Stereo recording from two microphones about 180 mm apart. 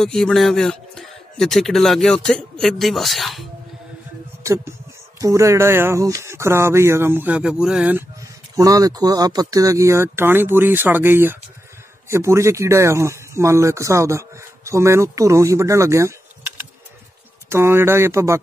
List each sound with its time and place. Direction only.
0.0 s a man's voice: centre (ahead or behind)
5.2 s speech: 15° right (ahead or behind)
8.2 s speech: 20° right (ahead or behind)
17.5 s speech: 15° right (ahead or behind)